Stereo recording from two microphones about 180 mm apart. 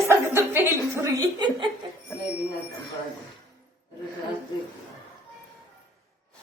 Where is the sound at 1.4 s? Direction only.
25° right (ahead or behind).